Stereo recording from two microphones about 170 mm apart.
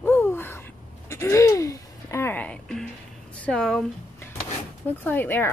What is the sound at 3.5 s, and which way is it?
Speech, centre (ahead or behind).